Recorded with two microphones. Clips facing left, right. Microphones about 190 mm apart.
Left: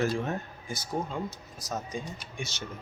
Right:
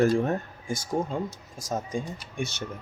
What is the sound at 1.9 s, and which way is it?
Speech, 55° right (ahead or behind).